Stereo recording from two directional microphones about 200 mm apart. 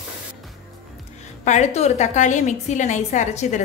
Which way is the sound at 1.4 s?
35° left (ahead or behind).